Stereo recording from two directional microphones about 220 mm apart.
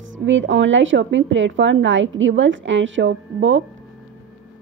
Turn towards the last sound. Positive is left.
turn(degrees=-60)  # may be behind; listen again after turning